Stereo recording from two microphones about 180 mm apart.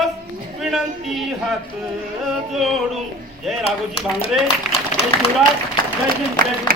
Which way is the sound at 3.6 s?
35° left (ahead or behind).